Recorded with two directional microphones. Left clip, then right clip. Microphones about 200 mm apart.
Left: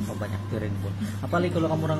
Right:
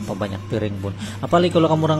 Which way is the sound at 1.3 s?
40° right (ahead or behind).